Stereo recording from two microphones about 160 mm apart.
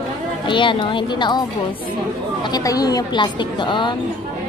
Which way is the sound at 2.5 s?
20° left (ahead or behind).